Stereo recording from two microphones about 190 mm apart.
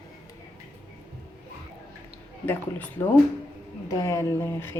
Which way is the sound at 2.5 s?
10° left (ahead or behind).